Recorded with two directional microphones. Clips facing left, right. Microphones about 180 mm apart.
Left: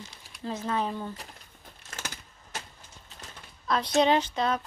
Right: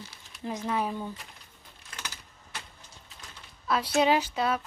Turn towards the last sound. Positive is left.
turn(degrees=-10)  # may be behind; listen again after turning